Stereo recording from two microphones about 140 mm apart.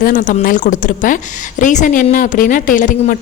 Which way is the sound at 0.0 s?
70° left (ahead or behind).